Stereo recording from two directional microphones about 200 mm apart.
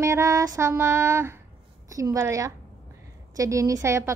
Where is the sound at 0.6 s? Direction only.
15° right (ahead or behind).